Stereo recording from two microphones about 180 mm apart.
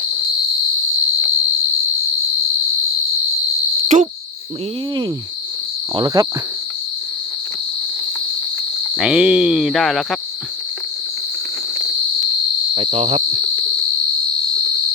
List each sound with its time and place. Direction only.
3.8 s cricket: 40° right (ahead or behind)
5.9 s cricket: 25° right (ahead or behind)
9.0 s cricket: 5° right (ahead or behind)
12.7 s cricket: 30° right (ahead or behind)
13.4 s cricket: 45° left (ahead or behind)